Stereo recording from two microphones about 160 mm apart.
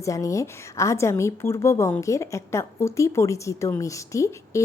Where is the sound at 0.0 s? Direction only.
20° left (ahead or behind).